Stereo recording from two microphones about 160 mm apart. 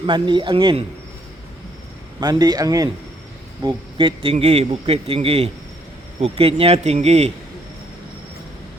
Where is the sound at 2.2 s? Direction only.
25° right (ahead or behind); by 7.3 s 40° right (ahead or behind).